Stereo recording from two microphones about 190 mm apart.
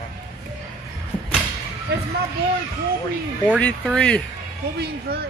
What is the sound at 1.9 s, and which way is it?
Speech, 60° right (ahead or behind).